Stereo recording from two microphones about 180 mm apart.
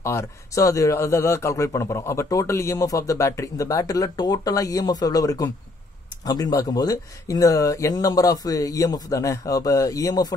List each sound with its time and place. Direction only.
0.0 s a man's voice: 15° left (ahead or behind)